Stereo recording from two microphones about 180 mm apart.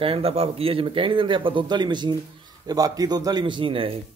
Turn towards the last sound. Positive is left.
turn(degrees=-30)  # may be behind; listen again after turning